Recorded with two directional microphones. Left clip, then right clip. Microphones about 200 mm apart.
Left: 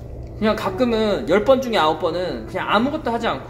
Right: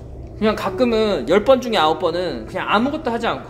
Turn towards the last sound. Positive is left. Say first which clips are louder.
# right 1 dB
turn(degrees=-35)  # may be behind; listen again after turning